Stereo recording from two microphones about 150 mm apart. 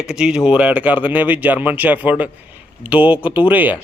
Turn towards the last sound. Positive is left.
turn(degrees=-10)  # may be behind; listen again after turning